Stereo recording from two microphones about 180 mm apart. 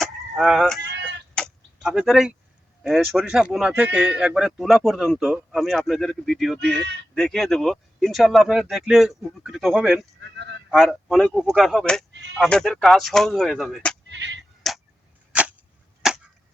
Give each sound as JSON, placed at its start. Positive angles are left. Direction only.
{"t": 0.0, "sound": "fowl", "side_deg": 0}
{"t": 0.9, "sound": "a sound", "side_deg": -75}
{"t": 1.4, "sound": "tick-tock", "side_deg": 0}
{"t": 2.8, "sound": "speech", "side_deg": 0}
{"t": 10.2, "sound": "speech", "side_deg": -75}
{"t": 10.7, "sound": "speech", "side_deg": 0}
{"t": 14.1, "sound": "a sound", "side_deg": -85}
{"t": 14.6, "sound": "tick", "side_deg": 0}
{"t": 15.3, "sound": "tick-tock", "side_deg": -5}
{"t": 16.0, "sound": "chop", "side_deg": 0}